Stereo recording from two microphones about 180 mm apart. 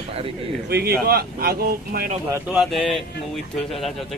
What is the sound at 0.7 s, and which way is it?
Speech, 60° right (ahead or behind).